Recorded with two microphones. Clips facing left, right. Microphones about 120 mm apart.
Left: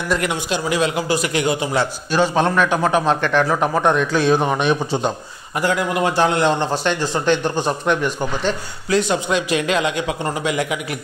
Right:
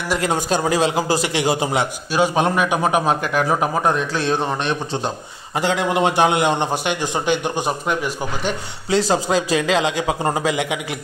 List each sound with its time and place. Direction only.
0.2 s a man's voice: 40° right (ahead or behind)
1.8 s a man's voice: 10° right (ahead or behind); by 5.1 s 5° left (ahead or behind)
5.6 s a man's voice: 25° right (ahead or behind); by 8.5 s 5° right (ahead or behind)
8.9 s a man's voice: 30° right (ahead or behind)